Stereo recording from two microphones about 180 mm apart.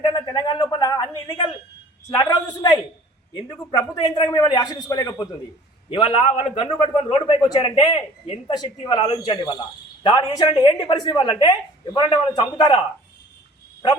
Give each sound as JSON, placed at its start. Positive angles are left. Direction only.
{"t": 0.0, "sound": "speech", "side_deg": 25}